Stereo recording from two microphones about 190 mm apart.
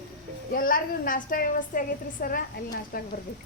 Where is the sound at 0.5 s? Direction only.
45° left (ahead or behind).